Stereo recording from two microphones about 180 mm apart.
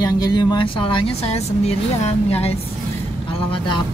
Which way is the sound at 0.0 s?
20° left (ahead or behind).